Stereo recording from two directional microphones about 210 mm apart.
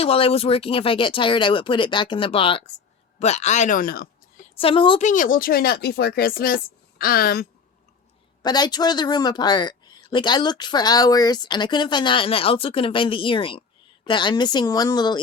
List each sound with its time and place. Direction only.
0.0 s speech: 25° left (ahead or behind); by 4.1 s 45° left (ahead or behind)
4.5 s speech: 25° left (ahead or behind); by 7.4 s 45° left (ahead or behind)
8.4 s speech: 20° left (ahead or behind)